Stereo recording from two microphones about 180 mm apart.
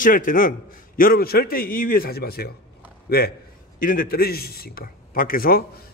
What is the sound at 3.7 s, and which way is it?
A man's voice, 50° left (ahead or behind).